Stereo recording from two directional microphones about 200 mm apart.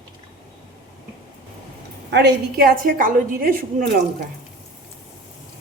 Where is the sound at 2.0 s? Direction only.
55° right (ahead or behind).